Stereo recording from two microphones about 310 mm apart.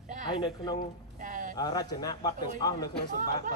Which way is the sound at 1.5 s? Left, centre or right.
Centre.